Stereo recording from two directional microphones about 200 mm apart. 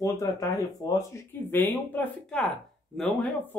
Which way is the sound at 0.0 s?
15° left (ahead or behind).